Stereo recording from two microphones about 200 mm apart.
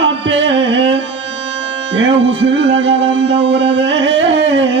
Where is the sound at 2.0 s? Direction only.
65° right (ahead or behind).